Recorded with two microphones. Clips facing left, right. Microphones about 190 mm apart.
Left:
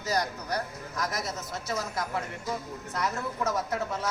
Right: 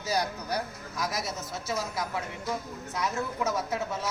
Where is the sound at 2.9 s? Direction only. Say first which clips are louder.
Right 1 dB; centre (ahead or behind).